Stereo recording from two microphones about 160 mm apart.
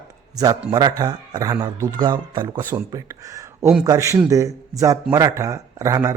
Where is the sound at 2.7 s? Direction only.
15° right (ahead or behind).